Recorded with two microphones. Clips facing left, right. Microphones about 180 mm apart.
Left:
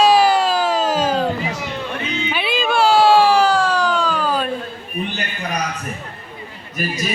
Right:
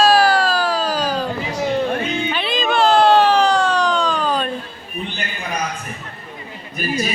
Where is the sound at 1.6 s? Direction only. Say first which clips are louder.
Right 7 dB; 45° right (ahead or behind).